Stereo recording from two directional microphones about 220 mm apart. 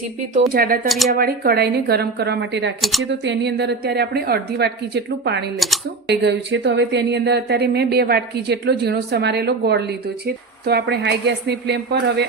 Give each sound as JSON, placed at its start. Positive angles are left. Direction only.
{"t": 0.3, "sound": "speech", "side_deg": -40}
{"t": 0.9, "sound": "speech", "side_deg": 0}
{"t": 1.1, "sound": "speech", "side_deg": -45}